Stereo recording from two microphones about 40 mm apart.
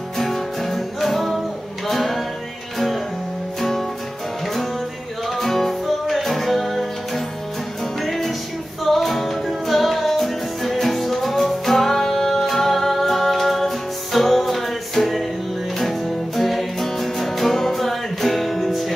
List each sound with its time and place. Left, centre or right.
0.2 s music: centre
5.4 s music: centre
8.0 s music: centre